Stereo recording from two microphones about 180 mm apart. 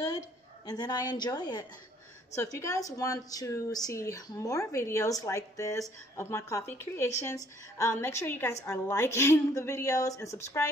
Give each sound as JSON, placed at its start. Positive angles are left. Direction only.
{"t": 0.7, "sound": "a woman's voice", "side_deg": 20}